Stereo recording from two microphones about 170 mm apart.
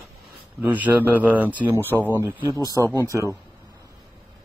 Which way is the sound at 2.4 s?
20° right (ahead or behind).